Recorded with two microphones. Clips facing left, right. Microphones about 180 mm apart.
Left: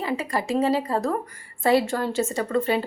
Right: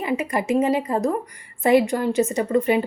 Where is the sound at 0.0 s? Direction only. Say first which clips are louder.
Right 3 dB; 20° right (ahead or behind).